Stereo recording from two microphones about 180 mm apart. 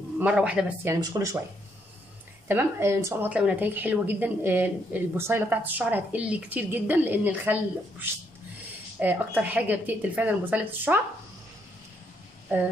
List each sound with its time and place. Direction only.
0.2 s a woman's voice: 5° right (ahead or behind)
1.0 s speech: 20° right (ahead or behind)
2.4 s a woman's voice: 15° right (ahead or behind)
9.0 s a woman's voice: 10° right (ahead or behind)
12.5 s a woman's voice: 10° right (ahead or behind)